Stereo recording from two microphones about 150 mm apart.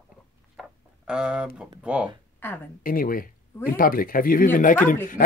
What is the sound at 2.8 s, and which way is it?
Speech, 70° left (ahead or behind).